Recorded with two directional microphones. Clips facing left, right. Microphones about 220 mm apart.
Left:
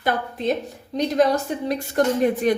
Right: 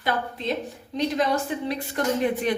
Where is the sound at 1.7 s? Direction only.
45° left (ahead or behind).